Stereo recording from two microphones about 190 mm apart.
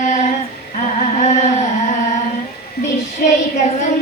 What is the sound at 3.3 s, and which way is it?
Child singing, 40° left (ahead or behind).